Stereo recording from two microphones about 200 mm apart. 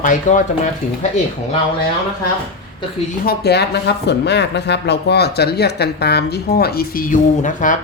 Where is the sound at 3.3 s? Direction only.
55° left (ahead or behind).